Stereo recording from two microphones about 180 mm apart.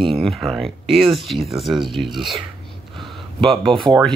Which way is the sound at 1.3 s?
Centre (ahead or behind).